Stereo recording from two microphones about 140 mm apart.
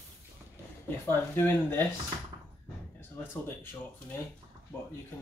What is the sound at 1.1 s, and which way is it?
Speech, 15° left (ahead or behind).